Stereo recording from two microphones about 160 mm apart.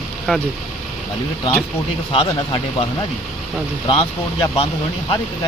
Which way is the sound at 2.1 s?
30° left (ahead or behind).